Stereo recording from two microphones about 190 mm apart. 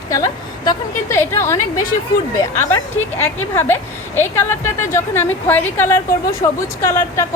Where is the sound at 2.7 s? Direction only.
10° left (ahead or behind).